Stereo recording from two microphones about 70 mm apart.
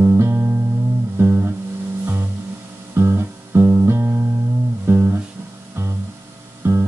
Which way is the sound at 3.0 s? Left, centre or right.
Right.